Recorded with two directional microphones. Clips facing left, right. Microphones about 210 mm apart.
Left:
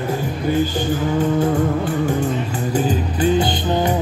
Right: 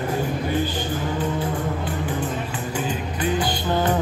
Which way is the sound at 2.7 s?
25° left (ahead or behind).